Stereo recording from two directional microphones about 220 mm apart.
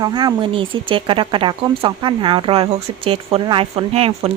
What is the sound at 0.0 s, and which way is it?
Speech, 20° right (ahead or behind).